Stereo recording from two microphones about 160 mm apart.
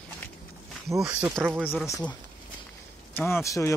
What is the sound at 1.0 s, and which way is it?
Speech, 5° right (ahead or behind).